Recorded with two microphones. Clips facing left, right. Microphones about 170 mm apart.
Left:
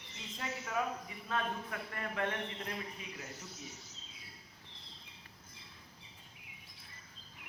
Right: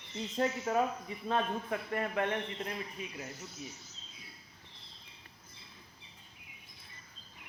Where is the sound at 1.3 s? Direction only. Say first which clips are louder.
Right 5 dB; 25° right (ahead or behind).